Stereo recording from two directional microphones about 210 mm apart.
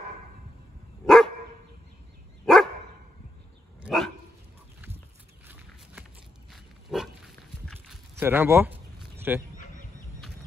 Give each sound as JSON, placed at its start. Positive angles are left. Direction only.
{"t": 1.0, "sound": "dog", "side_deg": 0}
{"t": 2.4, "sound": "dog", "side_deg": 0}
{"t": 3.8, "sound": "dog", "side_deg": 0}
{"t": 6.5, "sound": "pig", "side_deg": 0}
{"t": 7.6, "sound": "livestock", "side_deg": 0}
{"t": 8.2, "sound": "a sound", "side_deg": -10}
{"t": 9.6, "sound": "fowl", "side_deg": 40}